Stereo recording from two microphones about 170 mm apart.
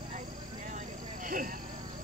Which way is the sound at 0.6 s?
50° right (ahead or behind).